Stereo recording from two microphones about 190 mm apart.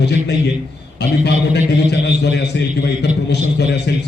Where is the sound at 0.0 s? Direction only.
65° left (ahead or behind).